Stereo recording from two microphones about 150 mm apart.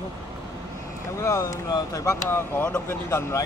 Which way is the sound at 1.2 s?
20° left (ahead or behind).